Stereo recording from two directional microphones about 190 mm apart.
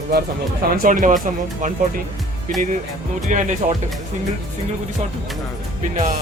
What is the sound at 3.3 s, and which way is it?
Speech, 40° right (ahead or behind).